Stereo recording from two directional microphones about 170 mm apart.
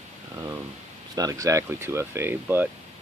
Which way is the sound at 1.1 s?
20° right (ahead or behind).